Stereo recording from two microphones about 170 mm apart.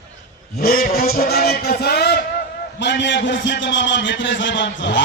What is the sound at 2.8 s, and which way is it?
A man's voice, 90° left.